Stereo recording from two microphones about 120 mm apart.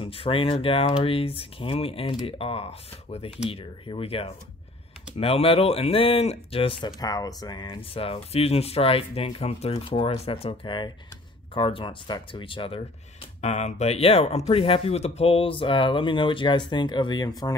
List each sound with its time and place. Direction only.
0.0 s speech: 50° left (ahead or behind)
7.0 s speech: 30° left (ahead or behind)
7.6 s speech: 50° left (ahead or behind)
13.4 s speech: 70° left (ahead or behind); by 17.3 s 40° left (ahead or behind)